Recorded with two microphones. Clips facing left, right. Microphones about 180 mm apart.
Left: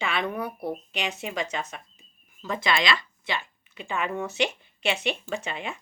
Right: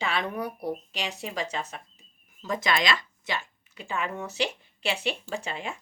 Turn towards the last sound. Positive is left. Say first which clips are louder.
# left 1 dB
turn(degrees=-35)  # may be behind; listen again after turning